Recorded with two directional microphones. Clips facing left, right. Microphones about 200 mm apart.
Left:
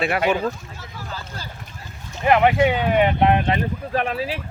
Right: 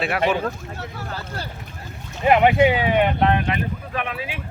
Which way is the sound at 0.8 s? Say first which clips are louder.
Right 2 dB; 65° right (ahead or behind).